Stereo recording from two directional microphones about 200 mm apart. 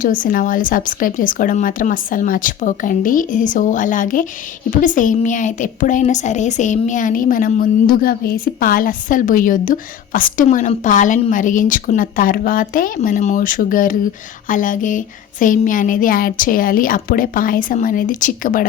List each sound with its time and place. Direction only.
0.0 s a woman's voice: 45° left (ahead or behind)